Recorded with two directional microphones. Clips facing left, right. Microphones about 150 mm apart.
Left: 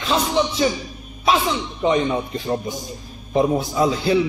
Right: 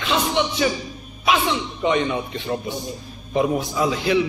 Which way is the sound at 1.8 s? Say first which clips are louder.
Left 3 dB; 30° left (ahead or behind).